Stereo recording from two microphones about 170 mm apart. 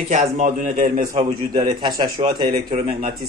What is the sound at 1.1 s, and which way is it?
A man's voice, 25° right (ahead or behind).